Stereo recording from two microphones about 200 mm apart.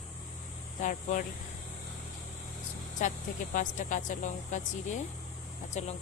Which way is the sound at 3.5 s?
40° left (ahead or behind).